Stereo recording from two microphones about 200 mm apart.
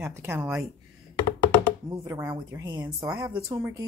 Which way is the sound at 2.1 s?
10° right (ahead or behind).